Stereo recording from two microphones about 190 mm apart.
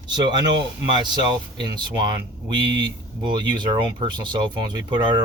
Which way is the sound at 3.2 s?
25° right (ahead or behind).